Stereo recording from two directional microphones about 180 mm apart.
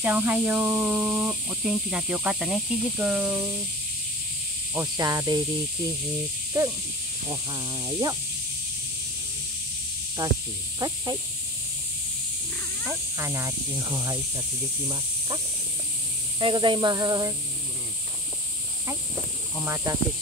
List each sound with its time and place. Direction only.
0.0 s speech: 10° right (ahead or behind)
4.7 s speech: 20° right (ahead or behind)
6.5 s speech: 15° right (ahead or behind)
10.2 s speech: 20° right (ahead or behind)
12.8 s speech: 15° right (ahead or behind)
19.5 s speech: 15° right (ahead or behind)